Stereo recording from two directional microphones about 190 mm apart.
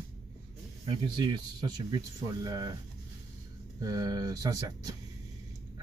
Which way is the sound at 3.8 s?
20° right (ahead or behind).